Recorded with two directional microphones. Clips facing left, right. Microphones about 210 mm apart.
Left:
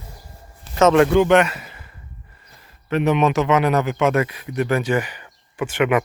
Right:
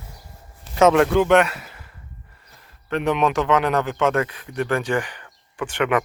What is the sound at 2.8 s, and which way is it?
A man's voice, 5° left (ahead or behind).